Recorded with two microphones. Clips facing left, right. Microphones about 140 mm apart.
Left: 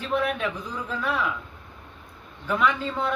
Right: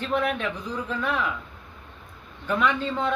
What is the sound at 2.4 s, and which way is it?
Speech, 5° left (ahead or behind).